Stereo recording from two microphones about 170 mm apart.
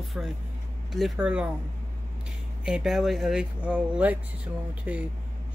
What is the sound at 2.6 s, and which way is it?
Speech, 5° right (ahead or behind).